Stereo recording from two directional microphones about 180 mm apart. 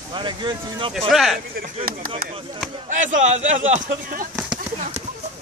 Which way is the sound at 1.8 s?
55° right (ahead or behind).